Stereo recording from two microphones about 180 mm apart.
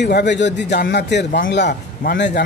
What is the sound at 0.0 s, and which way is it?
Speech, 70° left (ahead or behind).